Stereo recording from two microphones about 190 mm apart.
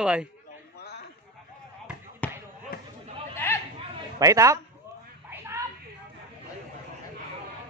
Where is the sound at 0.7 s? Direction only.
60° left (ahead or behind).